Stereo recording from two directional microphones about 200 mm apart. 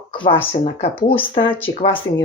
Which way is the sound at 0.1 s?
25° left (ahead or behind).